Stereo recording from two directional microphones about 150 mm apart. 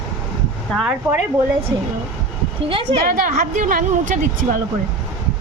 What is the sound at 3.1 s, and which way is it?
A woman's voice, 65° right (ahead or behind).